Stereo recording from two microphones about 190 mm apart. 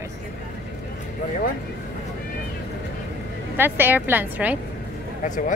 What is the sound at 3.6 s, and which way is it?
Speech, 10° right (ahead or behind).